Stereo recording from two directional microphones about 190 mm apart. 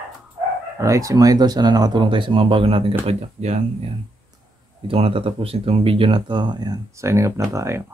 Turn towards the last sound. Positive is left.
turn(degrees=-15)  # may be behind; listen again after turning